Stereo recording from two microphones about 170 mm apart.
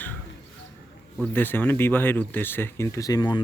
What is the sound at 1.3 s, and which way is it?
Speech, 10° left (ahead or behind).